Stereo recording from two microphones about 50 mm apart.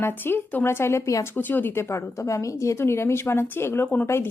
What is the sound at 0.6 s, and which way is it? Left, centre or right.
Speech, left.